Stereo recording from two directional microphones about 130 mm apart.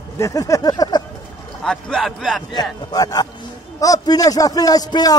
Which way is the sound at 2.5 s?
30° left (ahead or behind).